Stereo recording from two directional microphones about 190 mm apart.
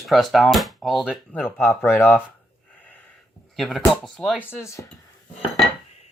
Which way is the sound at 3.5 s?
Centre (ahead or behind).